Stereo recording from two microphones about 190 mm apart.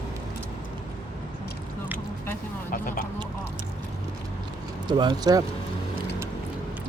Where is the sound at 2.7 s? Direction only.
45° left (ahead or behind).